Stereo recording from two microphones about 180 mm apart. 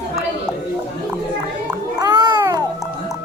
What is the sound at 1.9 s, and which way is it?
Babbling, 25° right (ahead or behind).